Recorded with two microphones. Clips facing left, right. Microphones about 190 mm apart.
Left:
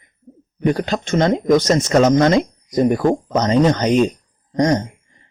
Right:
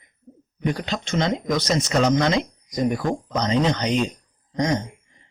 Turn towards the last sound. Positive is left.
turn(degrees=45)  # may be behind; listen again after turning